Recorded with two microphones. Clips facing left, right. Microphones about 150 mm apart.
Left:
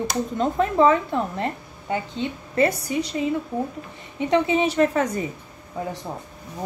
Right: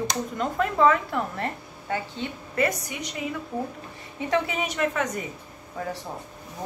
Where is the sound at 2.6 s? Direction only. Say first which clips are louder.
Left 7 dB; 30° left (ahead or behind).